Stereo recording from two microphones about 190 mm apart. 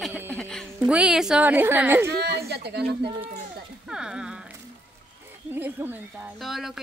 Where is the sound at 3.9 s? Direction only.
5° right (ahead or behind).